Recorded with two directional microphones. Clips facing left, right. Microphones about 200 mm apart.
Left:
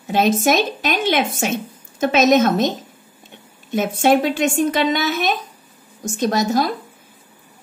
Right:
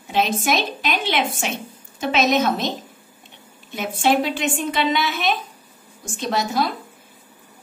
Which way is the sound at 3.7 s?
45° left (ahead or behind).